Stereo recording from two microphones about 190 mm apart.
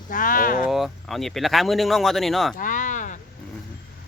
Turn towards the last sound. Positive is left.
turn(degrees=40)  # may be behind; listen again after turning